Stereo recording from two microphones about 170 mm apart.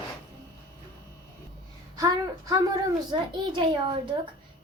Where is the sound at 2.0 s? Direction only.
20° right (ahead or behind).